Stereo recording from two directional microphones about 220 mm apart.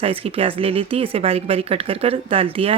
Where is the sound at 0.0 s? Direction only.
25° right (ahead or behind).